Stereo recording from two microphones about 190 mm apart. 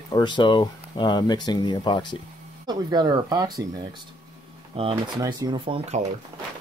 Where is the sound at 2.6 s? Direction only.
20° right (ahead or behind).